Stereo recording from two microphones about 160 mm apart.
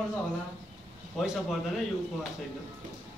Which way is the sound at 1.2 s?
Centre (ahead or behind).